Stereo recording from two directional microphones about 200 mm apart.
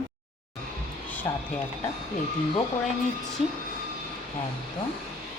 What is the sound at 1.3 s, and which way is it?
Speech, 15° left (ahead or behind).